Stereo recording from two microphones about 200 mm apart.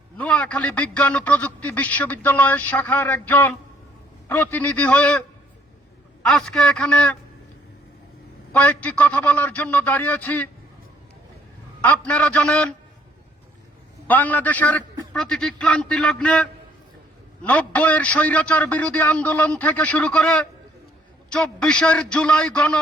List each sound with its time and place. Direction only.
0.2 s a man's voice: 5° left (ahead or behind)
6.2 s a man's voice: centre (ahead or behind)
8.5 s a man's voice: 5° left (ahead or behind)
11.8 s a man's voice: 5° left (ahead or behind)
14.1 s a man's voice: 10° left (ahead or behind)